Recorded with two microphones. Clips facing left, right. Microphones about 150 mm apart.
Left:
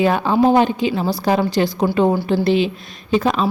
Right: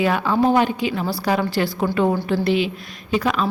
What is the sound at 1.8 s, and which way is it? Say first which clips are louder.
A woman's voice: left 3 dB; 30° left (ahead or behind).